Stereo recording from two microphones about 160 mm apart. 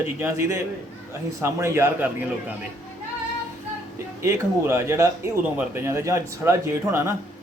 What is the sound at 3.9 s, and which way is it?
Speech, 15° right (ahead or behind).